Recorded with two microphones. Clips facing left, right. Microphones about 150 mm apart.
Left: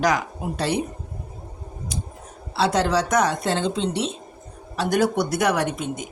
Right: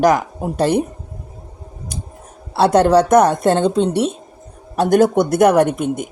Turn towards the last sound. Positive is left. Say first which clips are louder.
# right 10 dB
turn(degrees=-55)  # may be behind; listen again after turning